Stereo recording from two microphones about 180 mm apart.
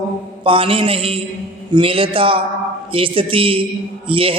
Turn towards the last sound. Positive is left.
turn(degrees=-30)  # may be behind; listen again after turning